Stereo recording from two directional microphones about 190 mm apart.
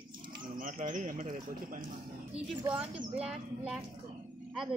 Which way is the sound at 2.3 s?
25° right (ahead or behind).